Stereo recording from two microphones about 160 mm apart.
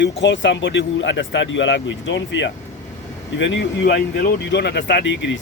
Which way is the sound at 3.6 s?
90° left.